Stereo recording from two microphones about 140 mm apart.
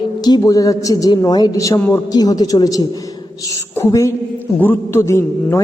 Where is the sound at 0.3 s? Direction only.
30° left (ahead or behind).